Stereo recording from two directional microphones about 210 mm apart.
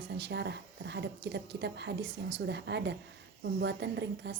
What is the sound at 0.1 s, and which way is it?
Speech, 55° right (ahead or behind).